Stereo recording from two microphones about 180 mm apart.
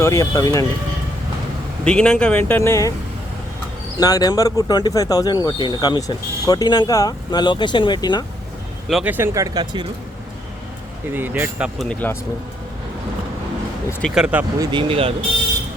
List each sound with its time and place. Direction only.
0.0 s speech: 15° left (ahead or behind)
1.8 s a man's voice: 5° left (ahead or behind)
3.9 s speech: 20° left (ahead or behind)
8.9 s speech: 5° right (ahead or behind)
11.1 s speech: 10° right (ahead or behind)
11.8 s a man's voice: 5° left (ahead or behind)
14.0 s speech: 5° right (ahead or behind)
14.6 s speech: 25° right (ahead or behind)